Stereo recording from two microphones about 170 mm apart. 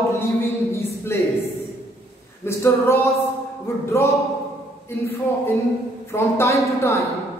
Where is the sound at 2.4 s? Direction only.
15° left (ahead or behind).